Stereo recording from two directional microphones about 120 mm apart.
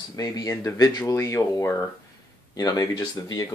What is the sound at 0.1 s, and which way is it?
Speech, 30° left (ahead or behind).